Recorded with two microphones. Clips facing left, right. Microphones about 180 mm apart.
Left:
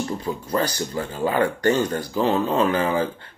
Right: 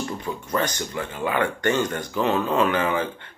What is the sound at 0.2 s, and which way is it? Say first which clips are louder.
Speech: even; 30° left (ahead or behind).